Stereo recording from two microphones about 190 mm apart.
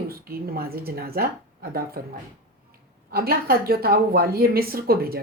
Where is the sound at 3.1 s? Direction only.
55° right (ahead or behind).